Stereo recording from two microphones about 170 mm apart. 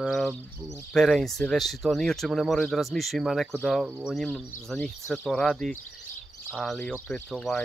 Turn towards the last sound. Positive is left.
turn(degrees=5)  # may be behind; listen again after turning